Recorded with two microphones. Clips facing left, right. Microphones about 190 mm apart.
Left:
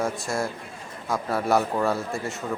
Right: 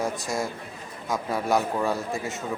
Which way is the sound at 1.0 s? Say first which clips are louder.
Left 1 dB; 20° right (ahead or behind).